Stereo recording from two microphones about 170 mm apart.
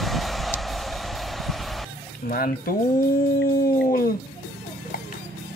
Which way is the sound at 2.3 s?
60° left (ahead or behind).